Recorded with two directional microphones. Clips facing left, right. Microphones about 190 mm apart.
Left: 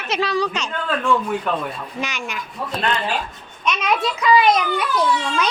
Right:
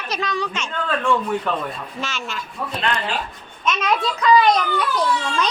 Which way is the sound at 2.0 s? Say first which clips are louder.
Even; 15° left (ahead or behind).